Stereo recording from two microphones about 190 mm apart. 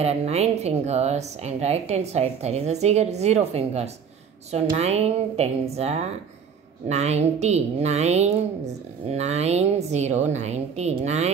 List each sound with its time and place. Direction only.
0.0 s a woman's voice: 35° right (ahead or behind)